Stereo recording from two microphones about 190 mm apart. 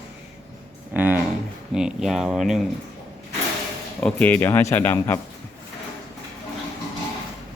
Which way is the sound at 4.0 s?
10° left (ahead or behind).